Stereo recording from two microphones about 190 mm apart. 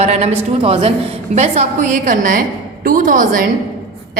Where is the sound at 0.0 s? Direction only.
35° right (ahead or behind).